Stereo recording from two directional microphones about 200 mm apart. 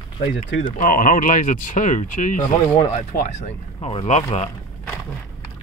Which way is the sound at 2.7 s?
25° left (ahead or behind).